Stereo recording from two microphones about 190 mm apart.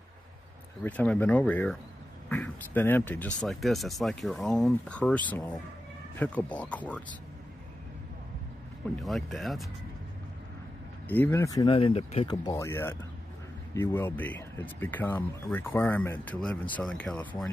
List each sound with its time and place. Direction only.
0.8 s speech: 10° left (ahead or behind)
9.0 s speech: centre (ahead or behind)
11.1 s speech: 10° left (ahead or behind)